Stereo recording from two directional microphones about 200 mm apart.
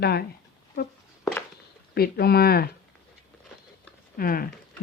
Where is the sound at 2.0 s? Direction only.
50° left (ahead or behind).